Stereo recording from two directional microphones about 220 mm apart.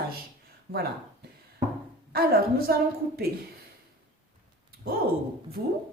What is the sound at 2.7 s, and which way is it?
Speech, 45° right (ahead or behind).